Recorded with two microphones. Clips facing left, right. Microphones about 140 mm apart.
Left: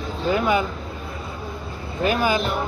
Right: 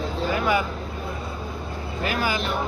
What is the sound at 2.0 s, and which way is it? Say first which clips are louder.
Speech: left 5 dB; 25° left (ahead or behind).